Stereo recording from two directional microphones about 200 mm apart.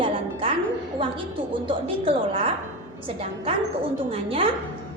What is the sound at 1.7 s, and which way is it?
A woman's voice, 25° right (ahead or behind).